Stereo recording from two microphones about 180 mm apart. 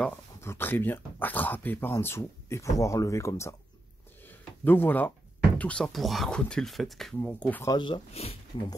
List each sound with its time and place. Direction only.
0.4 s speech: 15° left (ahead or behind)
4.3 s a sound: 10° left (ahead or behind)
5.6 s speech: 5° left (ahead or behind)
7.7 s speech: 25° left (ahead or behind)